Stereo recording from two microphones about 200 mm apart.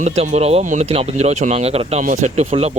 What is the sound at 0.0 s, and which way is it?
Speech, 30° right (ahead or behind).